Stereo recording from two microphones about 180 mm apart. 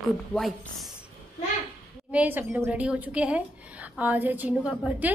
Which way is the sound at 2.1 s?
10° right (ahead or behind).